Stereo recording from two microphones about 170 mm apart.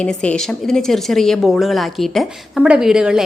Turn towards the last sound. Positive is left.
turn(degrees=-5)  # may be behind; listen again after turning